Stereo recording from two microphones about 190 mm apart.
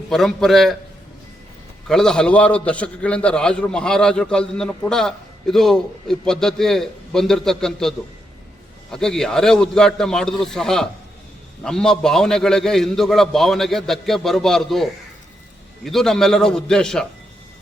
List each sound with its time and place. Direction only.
0.1 s a man's voice: centre (ahead or behind)
1.9 s a man's voice: 5° left (ahead or behind)